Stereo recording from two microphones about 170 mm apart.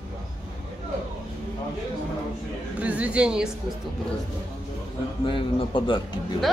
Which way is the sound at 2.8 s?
5° right (ahead or behind).